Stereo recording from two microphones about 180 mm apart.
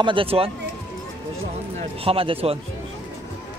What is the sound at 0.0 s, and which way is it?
Speech, 30° right (ahead or behind).